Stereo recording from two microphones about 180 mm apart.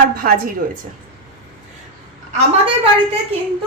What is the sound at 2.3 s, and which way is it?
Speech, 35° right (ahead or behind).